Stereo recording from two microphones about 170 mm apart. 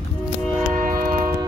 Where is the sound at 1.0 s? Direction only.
60° right (ahead or behind).